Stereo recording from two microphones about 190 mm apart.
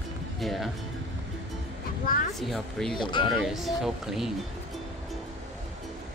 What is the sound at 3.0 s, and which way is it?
Speech, 25° left (ahead or behind).